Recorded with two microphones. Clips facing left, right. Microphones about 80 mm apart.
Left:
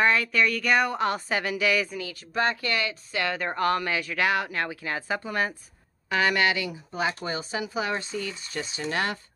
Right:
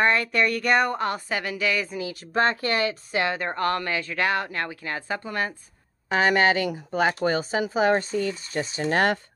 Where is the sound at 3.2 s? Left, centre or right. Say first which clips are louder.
Even; centre.